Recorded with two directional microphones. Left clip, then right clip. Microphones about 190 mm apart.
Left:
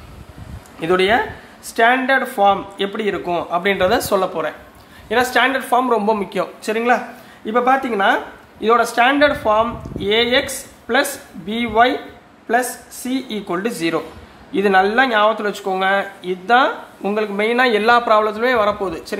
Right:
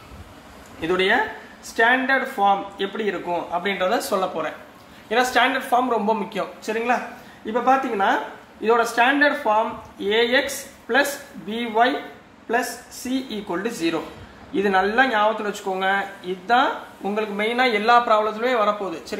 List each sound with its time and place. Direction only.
0.7 s speech: 45° left (ahead or behind)